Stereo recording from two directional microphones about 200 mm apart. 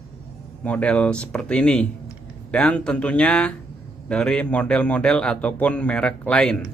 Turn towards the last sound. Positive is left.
turn(degrees=5)  # may be behind; listen again after turning